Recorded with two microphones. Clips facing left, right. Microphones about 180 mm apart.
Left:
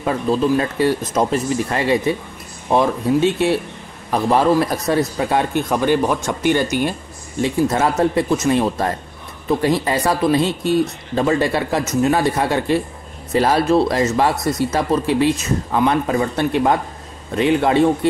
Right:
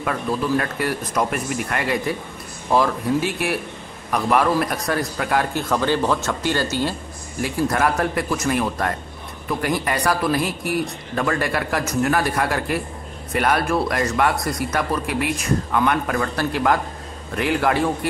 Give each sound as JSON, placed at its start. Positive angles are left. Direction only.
{"t": 0.0, "sound": "a man's voice", "side_deg": 25}